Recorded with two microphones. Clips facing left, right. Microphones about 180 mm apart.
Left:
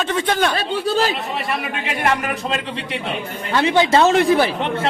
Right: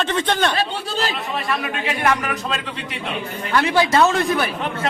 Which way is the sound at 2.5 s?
25° left (ahead or behind).